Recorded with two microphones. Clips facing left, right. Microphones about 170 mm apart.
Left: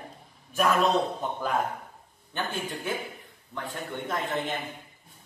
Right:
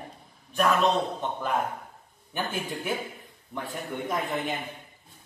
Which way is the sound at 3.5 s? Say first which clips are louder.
Right 1 dB; 15° right (ahead or behind).